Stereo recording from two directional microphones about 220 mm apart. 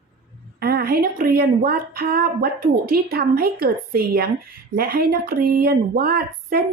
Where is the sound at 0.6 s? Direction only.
45° right (ahead or behind).